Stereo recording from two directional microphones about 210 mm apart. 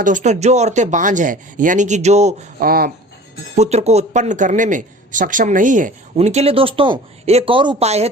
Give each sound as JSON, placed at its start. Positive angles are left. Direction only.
{"t": 0.0, "sound": "speech", "side_deg": -35}
{"t": 3.5, "sound": "speech", "side_deg": -30}